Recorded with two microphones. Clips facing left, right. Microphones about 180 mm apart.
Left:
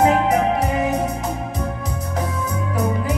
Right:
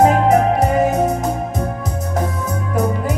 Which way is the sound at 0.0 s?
45° right (ahead or behind).